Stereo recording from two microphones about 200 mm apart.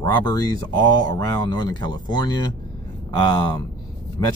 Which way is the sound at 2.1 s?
20° left (ahead or behind).